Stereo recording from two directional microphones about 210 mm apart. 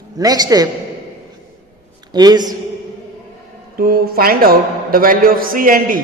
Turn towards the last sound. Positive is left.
turn(degrees=-40)  # may be behind; listen again after turning